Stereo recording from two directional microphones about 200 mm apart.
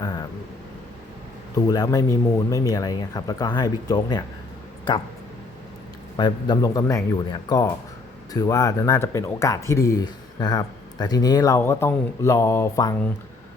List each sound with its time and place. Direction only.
0.0 s vehicle: 20° left (ahead or behind)
1.5 s speech: 20° left (ahead or behind)
6.1 s speech: 20° left (ahead or behind)